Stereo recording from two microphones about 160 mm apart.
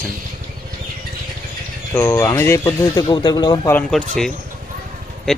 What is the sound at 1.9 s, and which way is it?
Speech, 15° left (ahead or behind).